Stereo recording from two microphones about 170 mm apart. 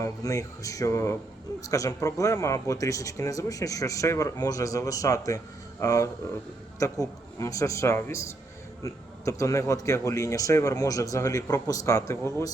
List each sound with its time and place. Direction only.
0.0 s a man's voice: 20° left (ahead or behind)